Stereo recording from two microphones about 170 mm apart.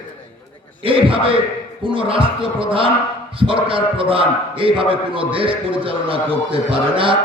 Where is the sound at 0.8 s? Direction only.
30° right (ahead or behind).